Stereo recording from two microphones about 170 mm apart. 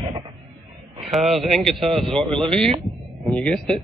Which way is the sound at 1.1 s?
Centre (ahead or behind).